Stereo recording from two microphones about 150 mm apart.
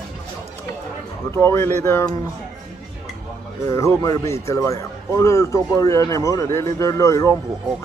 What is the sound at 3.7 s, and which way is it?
Speech, 20° left (ahead or behind).